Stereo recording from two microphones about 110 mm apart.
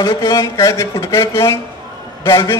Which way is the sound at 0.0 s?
40° left (ahead or behind).